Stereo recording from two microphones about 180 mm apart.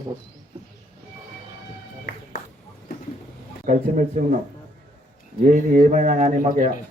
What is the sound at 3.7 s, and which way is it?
Speech, 45° right (ahead or behind).